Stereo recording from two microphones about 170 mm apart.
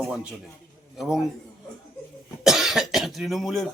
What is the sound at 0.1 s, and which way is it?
Speech, 5° right (ahead or behind).